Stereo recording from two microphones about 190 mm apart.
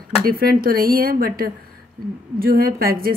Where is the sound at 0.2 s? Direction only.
50° right (ahead or behind).